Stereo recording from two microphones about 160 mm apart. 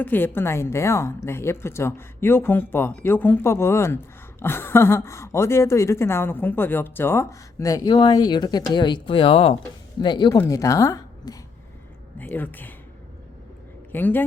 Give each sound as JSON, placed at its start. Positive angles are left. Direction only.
{"t": 0.0, "sound": "a woman's voice", "side_deg": 10}
{"t": 13.9, "sound": "a woman's voice", "side_deg": 10}